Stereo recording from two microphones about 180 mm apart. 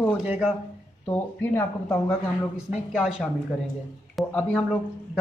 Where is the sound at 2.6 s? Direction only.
Centre (ahead or behind).